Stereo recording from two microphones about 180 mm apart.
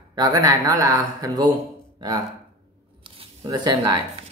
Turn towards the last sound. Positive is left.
turn(degrees=-25)  # may be behind; listen again after turning